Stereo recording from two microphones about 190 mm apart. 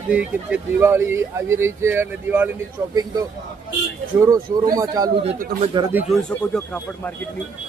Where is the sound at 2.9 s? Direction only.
20° right (ahead or behind).